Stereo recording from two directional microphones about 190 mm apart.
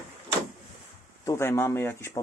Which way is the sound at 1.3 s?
15° left (ahead or behind).